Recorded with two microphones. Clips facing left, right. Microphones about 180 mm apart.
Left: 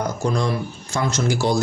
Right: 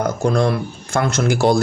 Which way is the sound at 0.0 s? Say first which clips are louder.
Right 5 dB; 60° right (ahead or behind).